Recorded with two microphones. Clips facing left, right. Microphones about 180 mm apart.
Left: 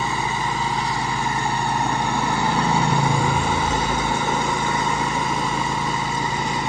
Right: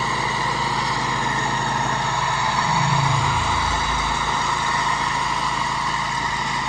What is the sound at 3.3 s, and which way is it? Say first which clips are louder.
Lawn mower: left 3 dB; 50° left (ahead or behind).